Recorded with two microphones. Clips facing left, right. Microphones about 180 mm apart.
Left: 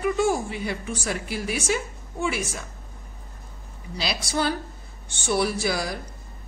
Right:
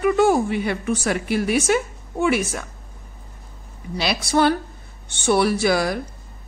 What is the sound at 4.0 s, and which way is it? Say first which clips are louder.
A woman's voice: right 7 dB; 65° right (ahead or behind).